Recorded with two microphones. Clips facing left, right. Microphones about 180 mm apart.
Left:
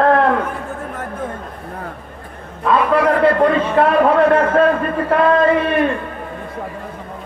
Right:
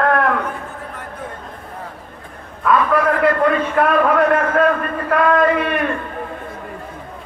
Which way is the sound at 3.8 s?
30° left (ahead or behind).